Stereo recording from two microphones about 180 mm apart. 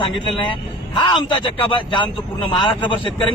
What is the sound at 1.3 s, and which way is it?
Speech, 25° left (ahead or behind).